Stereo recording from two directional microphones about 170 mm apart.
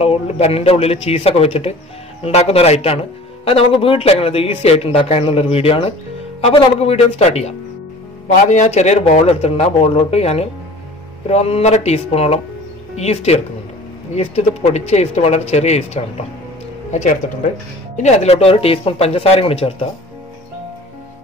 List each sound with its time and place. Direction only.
0.0 s speech: 35° left (ahead or behind)